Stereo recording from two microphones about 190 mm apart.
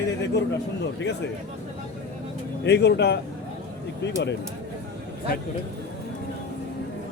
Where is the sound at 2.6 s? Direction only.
60° left (ahead or behind).